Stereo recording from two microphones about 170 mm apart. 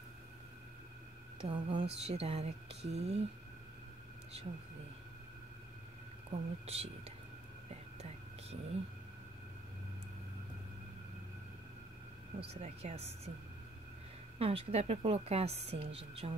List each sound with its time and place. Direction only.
1.4 s a woman's voice: 30° right (ahead or behind)
6.3 s a woman's voice: 35° right (ahead or behind)
12.4 s a woman's voice: 40° right (ahead or behind)
14.4 s a woman's voice: 35° right (ahead or behind)